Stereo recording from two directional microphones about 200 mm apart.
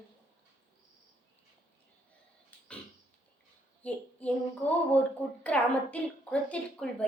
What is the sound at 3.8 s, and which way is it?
Child singing, 5° left (ahead or behind).